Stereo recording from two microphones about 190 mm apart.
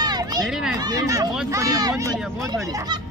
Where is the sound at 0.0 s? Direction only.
20° right (ahead or behind).